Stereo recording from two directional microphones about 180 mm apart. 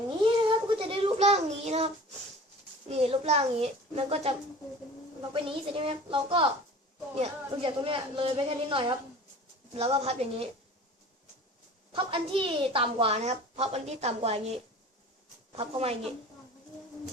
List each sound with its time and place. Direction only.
0.2 s a sound: 25° right (ahead or behind)
2.9 s a woman's voice: 35° right (ahead or behind)
11.9 s a woman's voice: 30° right (ahead or behind)